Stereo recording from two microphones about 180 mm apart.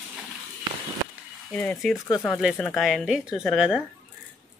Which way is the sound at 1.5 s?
5° left (ahead or behind).